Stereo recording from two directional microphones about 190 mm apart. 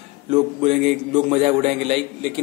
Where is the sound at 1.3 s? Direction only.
30° right (ahead or behind).